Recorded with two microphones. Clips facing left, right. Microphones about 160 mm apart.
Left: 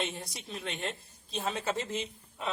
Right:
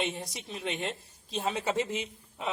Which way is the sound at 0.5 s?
10° right (ahead or behind).